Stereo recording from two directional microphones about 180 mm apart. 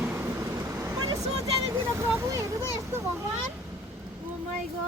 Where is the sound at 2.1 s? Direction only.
15° right (ahead or behind).